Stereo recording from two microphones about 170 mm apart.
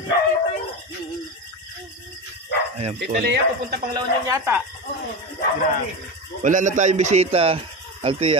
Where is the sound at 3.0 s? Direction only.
75° right (ahead or behind).